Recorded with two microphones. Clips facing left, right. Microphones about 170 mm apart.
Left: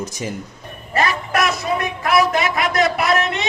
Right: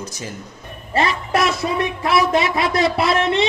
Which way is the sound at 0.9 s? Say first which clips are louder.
Right 1 dB; 25° right (ahead or behind).